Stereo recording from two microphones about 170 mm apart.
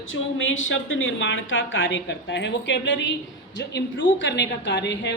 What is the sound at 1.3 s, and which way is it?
A woman's voice, 90° left.